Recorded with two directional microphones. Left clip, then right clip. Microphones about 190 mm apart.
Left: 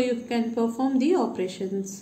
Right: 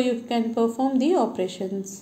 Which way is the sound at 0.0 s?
20° right (ahead or behind).